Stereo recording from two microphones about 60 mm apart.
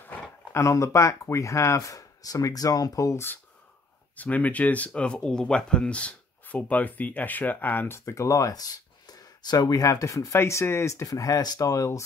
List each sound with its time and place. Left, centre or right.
0.5 s speech: left
4.2 s speech: left
8.0 s speech: left
9.7 s speech: left
10.3 s speech: left